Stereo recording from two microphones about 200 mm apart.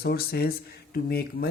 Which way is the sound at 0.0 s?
50° left (ahead or behind).